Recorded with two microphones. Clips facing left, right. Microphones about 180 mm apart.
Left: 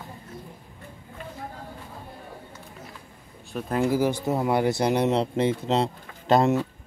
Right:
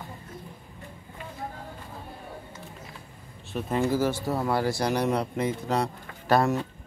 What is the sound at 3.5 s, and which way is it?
Speech, centre (ahead or behind).